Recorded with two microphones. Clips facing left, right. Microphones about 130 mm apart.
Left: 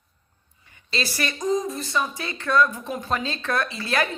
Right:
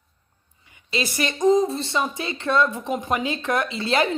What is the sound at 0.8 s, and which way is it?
A woman's voice, 20° right (ahead or behind).